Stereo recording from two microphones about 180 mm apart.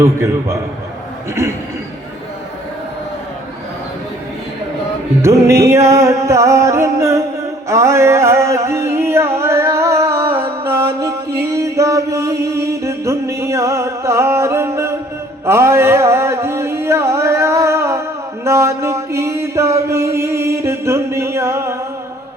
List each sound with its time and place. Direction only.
0.0 s music: 15° right (ahead or behind)
5.2 s music: 15° right (ahead or behind)
18.4 s mantra: 15° right (ahead or behind)